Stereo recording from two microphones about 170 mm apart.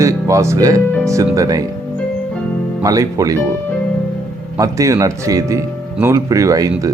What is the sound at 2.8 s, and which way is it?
Speech, 20° right (ahead or behind).